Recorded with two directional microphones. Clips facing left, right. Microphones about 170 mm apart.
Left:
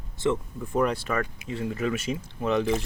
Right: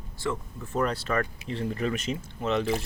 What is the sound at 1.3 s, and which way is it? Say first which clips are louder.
Speech: even; 30° right (ahead or behind).